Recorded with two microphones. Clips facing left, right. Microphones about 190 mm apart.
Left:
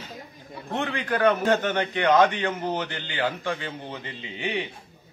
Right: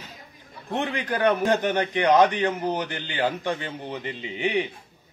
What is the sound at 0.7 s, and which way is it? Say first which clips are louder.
A man's voice: even; 15° right (ahead or behind).